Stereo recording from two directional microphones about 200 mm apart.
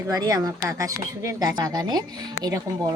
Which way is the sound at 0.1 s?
20° right (ahead or behind).